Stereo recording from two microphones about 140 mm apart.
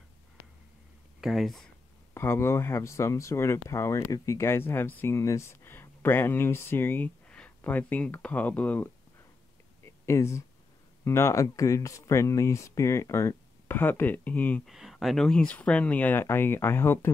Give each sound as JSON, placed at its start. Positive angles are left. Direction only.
{"t": 1.2, "sound": "speech", "side_deg": 0}
{"t": 2.1, "sound": "speech", "side_deg": 20}
{"t": 10.0, "sound": "speech", "side_deg": 20}
{"t": 14.7, "sound": "speech", "side_deg": 0}